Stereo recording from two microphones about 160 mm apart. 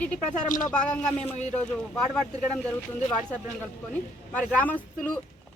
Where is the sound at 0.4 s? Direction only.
55° left (ahead or behind).